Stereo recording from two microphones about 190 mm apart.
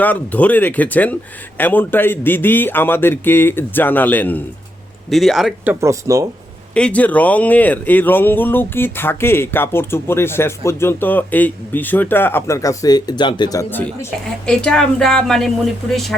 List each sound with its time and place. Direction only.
0.0 s speech: 10° left (ahead or behind)
5.8 s speech: 15° right (ahead or behind)
6.7 s speech: 5° left (ahead or behind)